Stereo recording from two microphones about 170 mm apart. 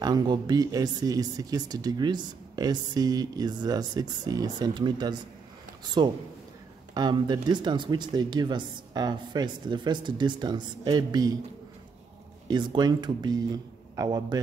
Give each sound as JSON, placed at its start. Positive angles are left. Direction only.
{"t": 0.0, "sound": "speech", "side_deg": -25}
{"t": 12.4, "sound": "speech", "side_deg": -25}